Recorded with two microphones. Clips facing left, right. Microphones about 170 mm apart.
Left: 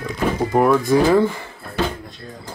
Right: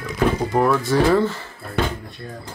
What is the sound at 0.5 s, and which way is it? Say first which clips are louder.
Speech: left 4 dB; 10° left (ahead or behind).